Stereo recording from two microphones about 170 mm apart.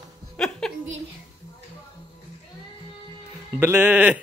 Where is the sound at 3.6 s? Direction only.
10° right (ahead or behind).